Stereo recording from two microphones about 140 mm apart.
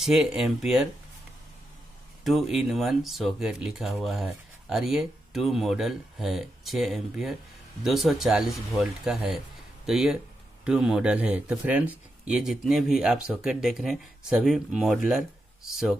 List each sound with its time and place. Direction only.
0.0 s speech: centre (ahead or behind)
2.2 s speech: centre (ahead or behind)